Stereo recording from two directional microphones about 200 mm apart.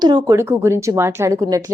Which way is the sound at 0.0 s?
20° right (ahead or behind).